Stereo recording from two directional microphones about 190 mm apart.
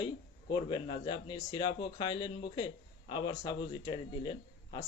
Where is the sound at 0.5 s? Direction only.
25° left (ahead or behind).